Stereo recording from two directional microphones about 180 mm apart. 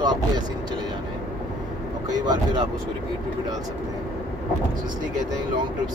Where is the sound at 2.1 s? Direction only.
20° right (ahead or behind).